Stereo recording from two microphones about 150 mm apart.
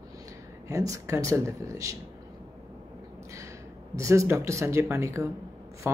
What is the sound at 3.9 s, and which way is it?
Speech, 20° right (ahead or behind).